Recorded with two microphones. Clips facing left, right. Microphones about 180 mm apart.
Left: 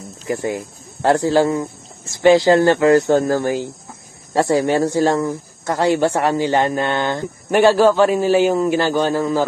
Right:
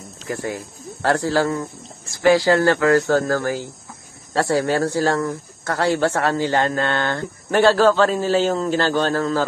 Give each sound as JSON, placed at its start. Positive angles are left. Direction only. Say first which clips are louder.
{"t": 0.3, "sound": "speech", "louder": "left 5 dB", "side_deg": 20}